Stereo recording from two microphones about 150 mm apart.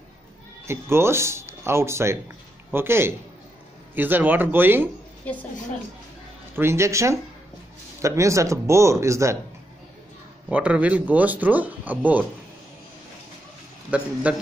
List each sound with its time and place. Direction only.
0.7 s speech: 15° right (ahead or behind)
5.2 s a woman's voice: 10° left (ahead or behind)
6.5 s speech: 15° right (ahead or behind)
10.5 s speech: 10° right (ahead or behind)
13.8 s speech: 10° right (ahead or behind)